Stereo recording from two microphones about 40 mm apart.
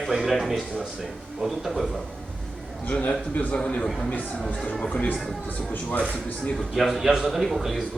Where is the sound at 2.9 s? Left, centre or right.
Left.